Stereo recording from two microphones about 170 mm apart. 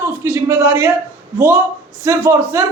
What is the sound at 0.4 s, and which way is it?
Speech, 10° right (ahead or behind).